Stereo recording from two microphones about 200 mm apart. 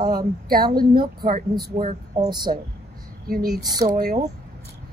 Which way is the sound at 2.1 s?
20° right (ahead or behind).